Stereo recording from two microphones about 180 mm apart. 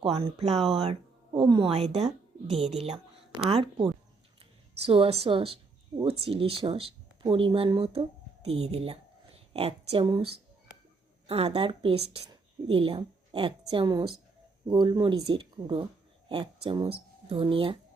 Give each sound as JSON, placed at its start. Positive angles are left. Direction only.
{"t": 0.0, "sound": "a woman's voice", "side_deg": -35}